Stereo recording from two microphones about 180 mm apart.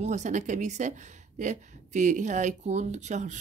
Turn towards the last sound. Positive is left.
turn(degrees=-40)  # may be behind; listen again after turning